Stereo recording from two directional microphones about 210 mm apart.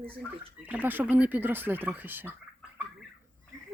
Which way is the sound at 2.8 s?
10° right (ahead or behind).